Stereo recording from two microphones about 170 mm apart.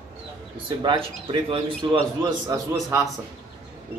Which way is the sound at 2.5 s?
20° right (ahead or behind).